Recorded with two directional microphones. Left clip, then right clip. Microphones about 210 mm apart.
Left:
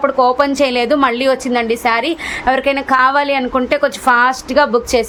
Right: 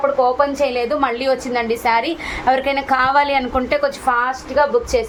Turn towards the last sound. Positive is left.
turn(degrees=55)  # may be behind; listen again after turning